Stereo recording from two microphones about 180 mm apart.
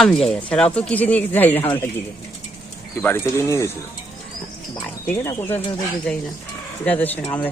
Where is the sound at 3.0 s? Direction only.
10° left (ahead or behind).